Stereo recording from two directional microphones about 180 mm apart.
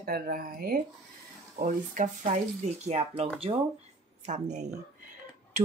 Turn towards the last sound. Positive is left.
turn(degrees=-40)  # may be behind; listen again after turning